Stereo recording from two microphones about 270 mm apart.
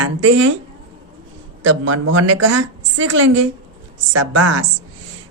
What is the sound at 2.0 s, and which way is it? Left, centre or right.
Speech, right.